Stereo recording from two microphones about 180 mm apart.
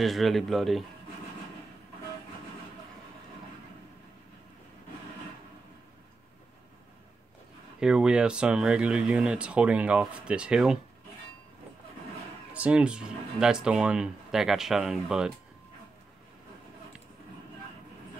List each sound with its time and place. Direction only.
0.0 s speech: centre (ahead or behind)
7.8 s speech: 5° right (ahead or behind)
12.5 s speech: 5° right (ahead or behind)